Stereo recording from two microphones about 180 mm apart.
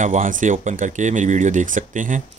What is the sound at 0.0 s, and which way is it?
Speech, 45° right (ahead or behind).